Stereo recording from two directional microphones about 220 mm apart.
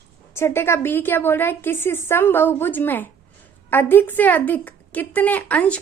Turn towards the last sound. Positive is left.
turn(degrees=5)  # may be behind; listen again after turning